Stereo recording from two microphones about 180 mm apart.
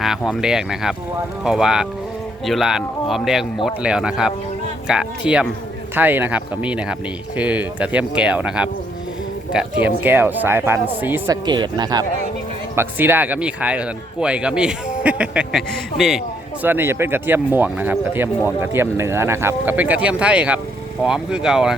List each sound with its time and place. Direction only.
0.0 s speech: centre (ahead or behind)
11.4 s speech: 25° right (ahead or behind)
12.7 s speech: 10° right (ahead or behind)
16.6 s speech: 10° right (ahead or behind)